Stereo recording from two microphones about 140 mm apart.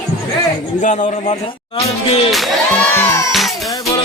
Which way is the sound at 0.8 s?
55° left (ahead or behind).